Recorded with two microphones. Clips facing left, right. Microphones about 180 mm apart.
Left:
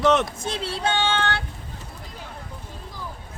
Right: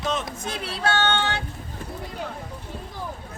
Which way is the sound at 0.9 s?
10° left (ahead or behind).